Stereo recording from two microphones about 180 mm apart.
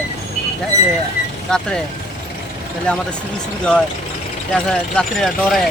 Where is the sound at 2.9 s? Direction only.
5° left (ahead or behind).